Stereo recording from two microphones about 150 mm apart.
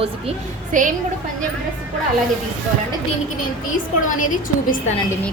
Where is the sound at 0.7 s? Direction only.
60° right (ahead or behind).